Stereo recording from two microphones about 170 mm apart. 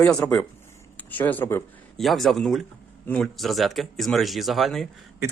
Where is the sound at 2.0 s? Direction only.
Centre (ahead or behind).